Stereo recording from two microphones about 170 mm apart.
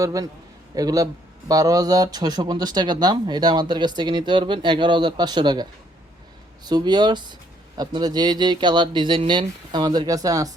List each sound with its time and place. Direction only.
0.0 s speech: 20° right (ahead or behind)
6.7 s speech: 25° right (ahead or behind)